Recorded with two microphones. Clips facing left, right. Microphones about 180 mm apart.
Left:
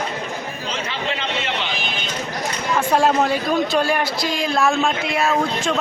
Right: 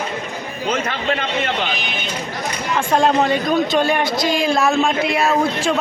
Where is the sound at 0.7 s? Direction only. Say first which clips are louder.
Right 6 dB; 50° right (ahead or behind).